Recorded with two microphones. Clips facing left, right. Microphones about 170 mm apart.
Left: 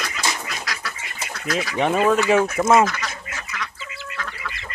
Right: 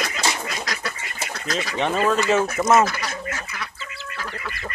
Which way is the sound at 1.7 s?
15° left (ahead or behind).